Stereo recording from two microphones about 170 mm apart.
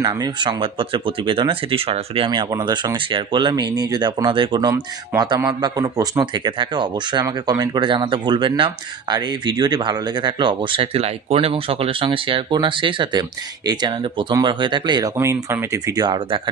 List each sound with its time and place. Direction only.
0.0 s speech: 25° right (ahead or behind)